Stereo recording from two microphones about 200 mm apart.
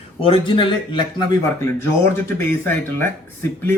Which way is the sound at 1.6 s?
10° left (ahead or behind).